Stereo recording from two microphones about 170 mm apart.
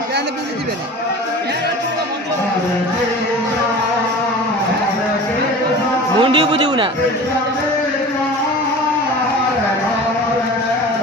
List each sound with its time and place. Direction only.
6.1 s a man's voice: 30° right (ahead or behind)